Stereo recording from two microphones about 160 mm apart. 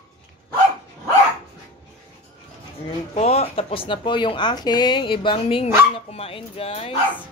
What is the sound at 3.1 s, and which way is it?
Speech, 40° left (ahead or behind).